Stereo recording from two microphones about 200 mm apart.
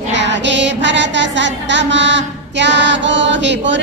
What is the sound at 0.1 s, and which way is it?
Music, 65° right (ahead or behind).